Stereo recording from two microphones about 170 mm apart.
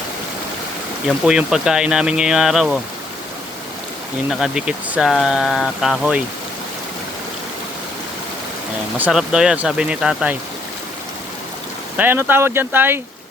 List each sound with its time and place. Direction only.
1.0 s speech: 5° right (ahead or behind)
4.3 s speech: centre (ahead or behind)
9.0 s speech: 5° right (ahead or behind)
11.9 s speech: 10° right (ahead or behind)